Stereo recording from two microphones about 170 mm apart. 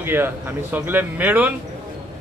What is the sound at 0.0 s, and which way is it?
A man's voice, 10° right (ahead or behind).